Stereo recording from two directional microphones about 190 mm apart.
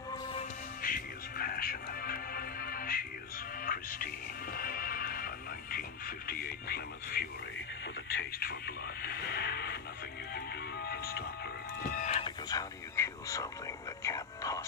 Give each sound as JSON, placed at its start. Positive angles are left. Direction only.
{"t": 0.1, "sound": "music", "side_deg": 30}
{"t": 0.8, "sound": "music", "side_deg": 50}
{"t": 8.2, "sound": "radio", "side_deg": 55}
{"t": 10.3, "sound": "music", "side_deg": 55}
{"t": 11.9, "sound": "music", "side_deg": 40}
{"t": 14.0, "sound": "a sound", "side_deg": 15}